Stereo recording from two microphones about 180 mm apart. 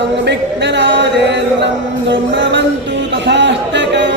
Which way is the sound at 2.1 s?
90° right.